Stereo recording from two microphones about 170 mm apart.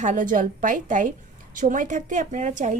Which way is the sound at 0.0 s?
50° right (ahead or behind).